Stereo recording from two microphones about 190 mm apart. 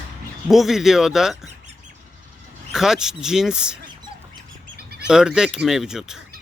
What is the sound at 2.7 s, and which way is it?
Speech, centre (ahead or behind).